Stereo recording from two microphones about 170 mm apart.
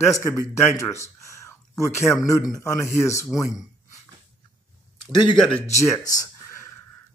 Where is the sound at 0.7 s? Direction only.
20° left (ahead or behind).